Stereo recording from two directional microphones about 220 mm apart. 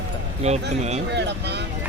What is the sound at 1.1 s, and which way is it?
Speech, 50° right (ahead or behind).